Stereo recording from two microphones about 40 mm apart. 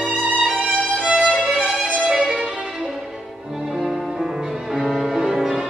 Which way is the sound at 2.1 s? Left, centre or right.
Right.